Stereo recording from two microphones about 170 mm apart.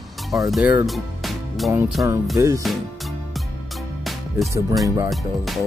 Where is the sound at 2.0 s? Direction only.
15° right (ahead or behind).